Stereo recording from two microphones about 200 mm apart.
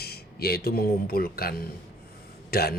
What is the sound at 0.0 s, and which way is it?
Speech, 50° left (ahead or behind).